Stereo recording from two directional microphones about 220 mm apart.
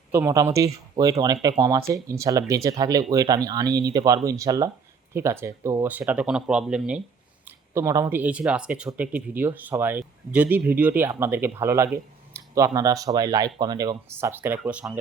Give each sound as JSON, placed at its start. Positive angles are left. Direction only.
{"t": 0.1, "sound": "speech", "side_deg": -15}